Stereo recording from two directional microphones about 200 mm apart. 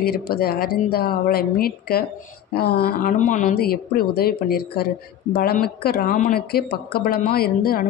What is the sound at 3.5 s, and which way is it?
Speech, 50° left (ahead or behind).